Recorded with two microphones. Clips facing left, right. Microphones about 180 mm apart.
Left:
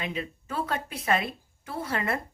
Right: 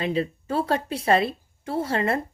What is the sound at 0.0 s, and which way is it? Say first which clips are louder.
A woman's voice: right 8 dB; 35° right (ahead or behind).